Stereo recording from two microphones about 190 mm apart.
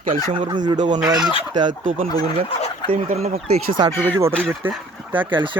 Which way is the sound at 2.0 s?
20° left (ahead or behind).